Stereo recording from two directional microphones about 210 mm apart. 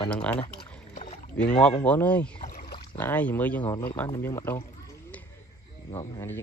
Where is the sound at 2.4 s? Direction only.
45° left (ahead or behind).